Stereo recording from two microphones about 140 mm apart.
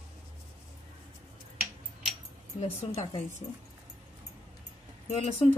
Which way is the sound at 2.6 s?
50° left (ahead or behind).